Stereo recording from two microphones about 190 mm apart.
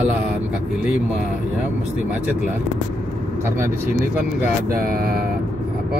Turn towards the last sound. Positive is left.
turn(degrees=-50)  # may be behind; listen again after turning